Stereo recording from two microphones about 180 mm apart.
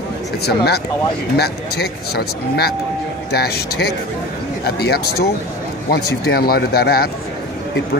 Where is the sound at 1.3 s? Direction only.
65° left (ahead or behind).